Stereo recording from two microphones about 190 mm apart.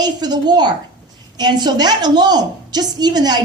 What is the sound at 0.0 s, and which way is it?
A woman's voice, 20° right (ahead or behind).